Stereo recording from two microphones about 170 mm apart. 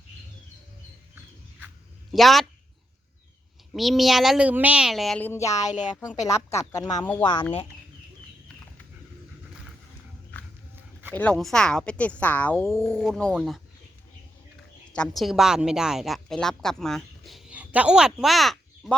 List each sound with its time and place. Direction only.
2.1 s speech: centre (ahead or behind)
3.7 s speech: centre (ahead or behind); by 5.6 s 20° left (ahead or behind)
5.6 s a woman's voice: 45° left (ahead or behind)
6.2 s speech: 15° left (ahead or behind)
7.0 s speech: 10° left (ahead or behind)
11.1 s speech: 10° left (ahead or behind)
14.9 s a woman's voice: 5° left (ahead or behind)